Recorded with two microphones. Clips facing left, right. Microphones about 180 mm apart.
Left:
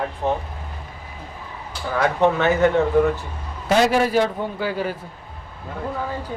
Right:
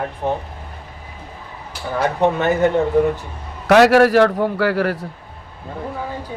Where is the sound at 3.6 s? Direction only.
75° right (ahead or behind).